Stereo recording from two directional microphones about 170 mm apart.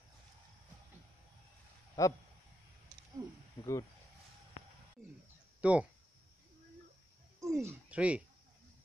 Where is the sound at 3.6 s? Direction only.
20° left (ahead or behind).